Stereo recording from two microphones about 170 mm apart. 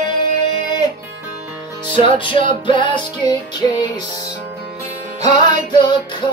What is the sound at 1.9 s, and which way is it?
Music, 30° left (ahead or behind).